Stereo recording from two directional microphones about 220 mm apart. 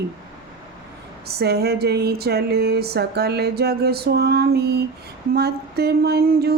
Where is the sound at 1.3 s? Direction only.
45° right (ahead or behind).